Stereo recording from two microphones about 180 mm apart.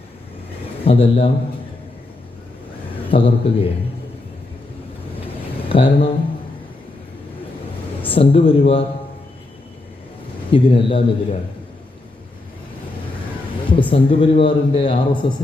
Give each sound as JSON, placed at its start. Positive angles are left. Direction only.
{"t": 0.9, "sound": "a man's voice", "side_deg": 30}
{"t": 3.1, "sound": "a man's voice", "side_deg": 30}
{"t": 5.6, "sound": "speech", "side_deg": 30}
{"t": 8.0, "sound": "speech", "side_deg": 30}
{"t": 10.5, "sound": "a man's voice", "side_deg": 30}
{"t": 13.7, "sound": "a man's voice", "side_deg": 30}